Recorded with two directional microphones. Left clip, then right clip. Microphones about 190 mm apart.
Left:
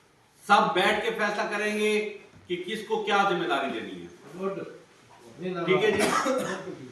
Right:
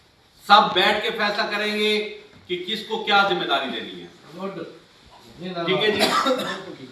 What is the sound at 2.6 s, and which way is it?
Speech, 15° left (ahead or behind).